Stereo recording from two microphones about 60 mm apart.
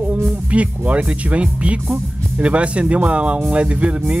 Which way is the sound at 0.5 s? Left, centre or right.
Right.